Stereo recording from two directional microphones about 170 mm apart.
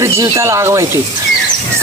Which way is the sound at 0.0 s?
15° right (ahead or behind).